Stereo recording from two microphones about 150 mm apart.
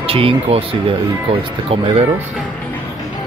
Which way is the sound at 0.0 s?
40° right (ahead or behind).